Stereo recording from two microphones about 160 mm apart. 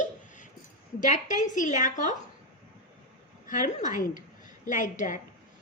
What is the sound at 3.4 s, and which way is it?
A woman's voice, 55° left (ahead or behind).